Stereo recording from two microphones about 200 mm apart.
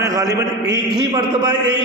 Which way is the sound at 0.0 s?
15° right (ahead or behind).